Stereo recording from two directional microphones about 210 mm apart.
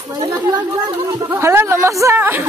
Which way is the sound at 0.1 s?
20° right (ahead or behind).